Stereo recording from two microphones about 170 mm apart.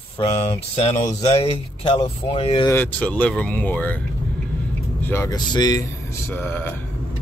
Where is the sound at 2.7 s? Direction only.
10° left (ahead or behind).